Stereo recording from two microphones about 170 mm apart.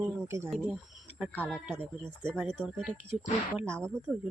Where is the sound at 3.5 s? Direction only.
15° right (ahead or behind).